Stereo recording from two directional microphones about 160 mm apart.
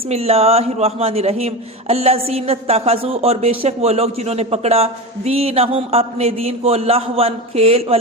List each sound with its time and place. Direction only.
0.1 s a man's voice: 40° right (ahead or behind)